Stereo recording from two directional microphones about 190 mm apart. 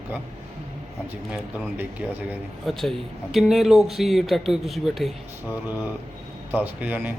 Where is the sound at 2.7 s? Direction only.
Centre (ahead or behind).